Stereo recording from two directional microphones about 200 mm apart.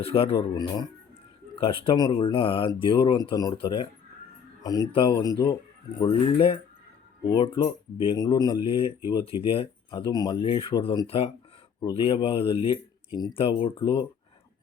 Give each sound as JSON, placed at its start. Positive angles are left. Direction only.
{"t": 0.0, "sound": "speech", "side_deg": 30}